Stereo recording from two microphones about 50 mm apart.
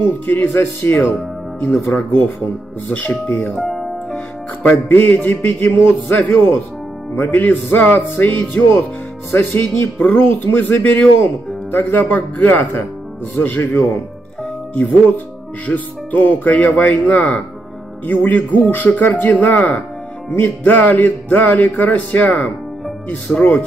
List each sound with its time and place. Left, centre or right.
0.0 s speech: left
1.6 s music: left
2.9 s speech: left
3.5 s music: centre
4.6 s music: left
7.9 s speech: left
9.3 s speech: left
13.4 s music: left
17.1 s speech: left
18.0 s music: left
23.0 s speech: centre